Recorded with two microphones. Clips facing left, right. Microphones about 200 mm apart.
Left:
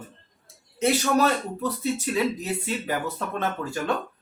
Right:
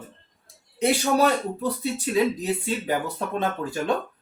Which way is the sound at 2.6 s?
15° right (ahead or behind).